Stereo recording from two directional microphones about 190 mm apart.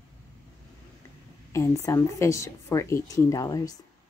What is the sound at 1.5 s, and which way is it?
Speech, 15° left (ahead or behind).